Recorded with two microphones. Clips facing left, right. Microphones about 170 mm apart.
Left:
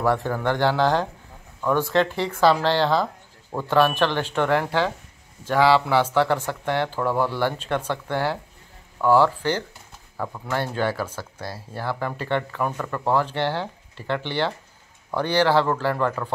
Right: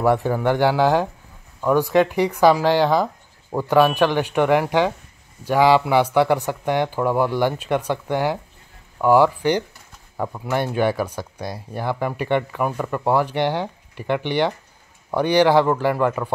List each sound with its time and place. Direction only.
0.0 s speech: 15° right (ahead or behind)